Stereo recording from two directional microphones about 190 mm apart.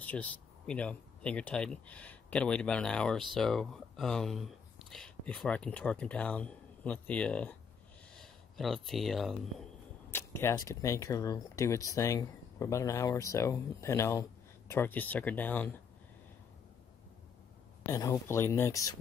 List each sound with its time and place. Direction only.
0.0 s speech: 10° left (ahead or behind)
10.1 s speech: 15° left (ahead or behind)
17.8 s speech: 15° left (ahead or behind)